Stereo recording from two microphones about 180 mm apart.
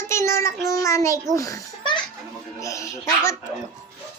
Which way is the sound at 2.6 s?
15° left (ahead or behind).